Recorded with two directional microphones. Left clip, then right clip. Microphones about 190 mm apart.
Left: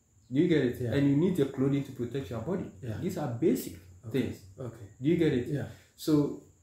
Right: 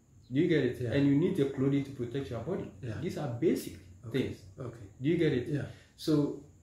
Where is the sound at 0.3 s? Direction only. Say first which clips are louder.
Left 2 dB; 15° left (ahead or behind).